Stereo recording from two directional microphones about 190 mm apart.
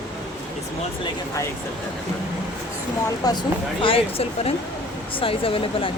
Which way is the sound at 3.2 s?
20° left (ahead or behind).